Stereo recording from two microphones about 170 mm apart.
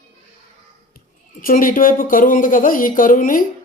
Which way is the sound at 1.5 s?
55° left (ahead or behind).